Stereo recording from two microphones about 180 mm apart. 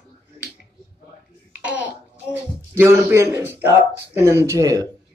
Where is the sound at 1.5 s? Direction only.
10° right (ahead or behind).